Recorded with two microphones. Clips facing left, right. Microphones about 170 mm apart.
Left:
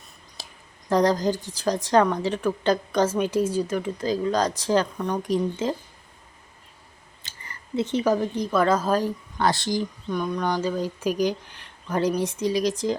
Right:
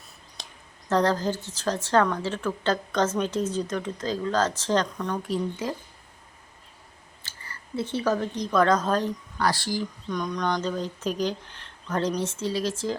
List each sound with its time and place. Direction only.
0.4 s a sound: 5° left (ahead or behind)
0.9 s a woman's voice: 15° left (ahead or behind)
7.2 s speech: 20° left (ahead or behind)
9.4 s speech: 20° left (ahead or behind)
10.1 s a woman's voice: 5° left (ahead or behind)